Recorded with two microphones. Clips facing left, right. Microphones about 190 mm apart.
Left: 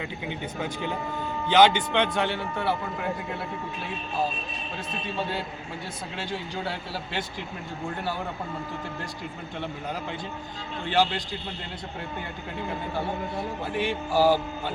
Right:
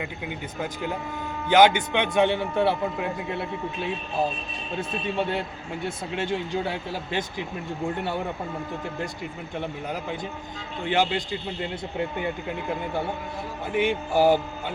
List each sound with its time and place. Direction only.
0.0 s speech: 5° right (ahead or behind)
6.5 s speech: 20° right (ahead or behind)
10.8 s speech: 15° right (ahead or behind)
13.7 s speech: 20° right (ahead or behind)